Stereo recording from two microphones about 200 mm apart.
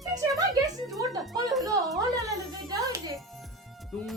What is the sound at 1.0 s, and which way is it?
Speech, 20° right (ahead or behind).